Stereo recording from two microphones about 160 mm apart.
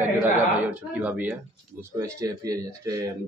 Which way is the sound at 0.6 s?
10° right (ahead or behind).